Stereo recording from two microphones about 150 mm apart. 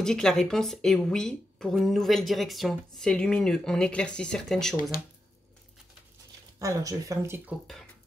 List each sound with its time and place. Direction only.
0.0 s speech: 5° left (ahead or behind)
6.6 s speech: 20° right (ahead or behind)